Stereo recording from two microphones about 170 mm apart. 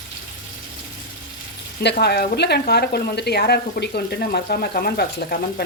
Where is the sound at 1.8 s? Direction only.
75° left (ahead or behind).